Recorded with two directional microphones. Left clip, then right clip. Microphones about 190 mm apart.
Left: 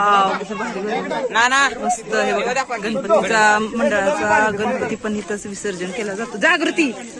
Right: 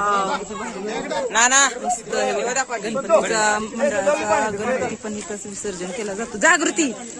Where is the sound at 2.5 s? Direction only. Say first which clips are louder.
Left 2 dB; 65° right (ahead or behind).